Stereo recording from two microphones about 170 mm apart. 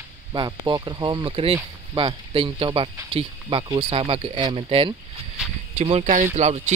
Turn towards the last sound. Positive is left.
turn(degrees=-40)  # may be behind; listen again after turning